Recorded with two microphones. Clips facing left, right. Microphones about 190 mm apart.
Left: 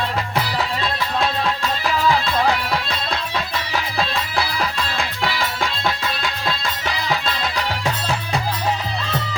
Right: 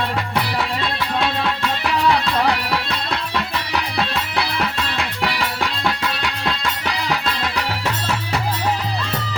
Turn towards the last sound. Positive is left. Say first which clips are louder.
# even
turn(degrees=-70)  # may be behind; listen again after turning